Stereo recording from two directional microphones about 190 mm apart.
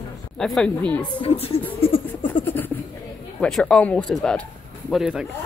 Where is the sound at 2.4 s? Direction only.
10° left (ahead or behind).